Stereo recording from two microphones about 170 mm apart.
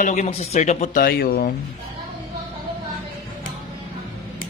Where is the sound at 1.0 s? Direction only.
60° left (ahead or behind).